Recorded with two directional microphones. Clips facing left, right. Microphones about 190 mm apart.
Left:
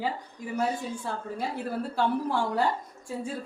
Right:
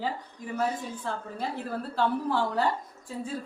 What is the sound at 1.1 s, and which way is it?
Speech, 10° left (ahead or behind).